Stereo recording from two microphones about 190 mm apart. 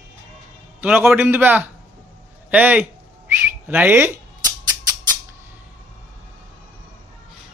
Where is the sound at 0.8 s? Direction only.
10° right (ahead or behind).